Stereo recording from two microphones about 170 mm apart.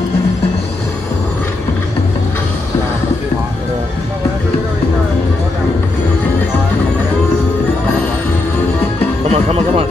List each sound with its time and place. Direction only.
9.3 s music: 35° right (ahead or behind)